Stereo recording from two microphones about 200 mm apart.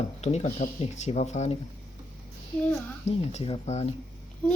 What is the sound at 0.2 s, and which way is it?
Speech, 35° left (ahead or behind).